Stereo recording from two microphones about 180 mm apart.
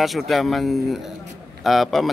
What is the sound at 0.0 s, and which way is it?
Speech, centre (ahead or behind).